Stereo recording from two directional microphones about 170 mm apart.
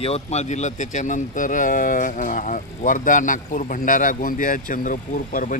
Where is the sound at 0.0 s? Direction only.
40° left (ahead or behind).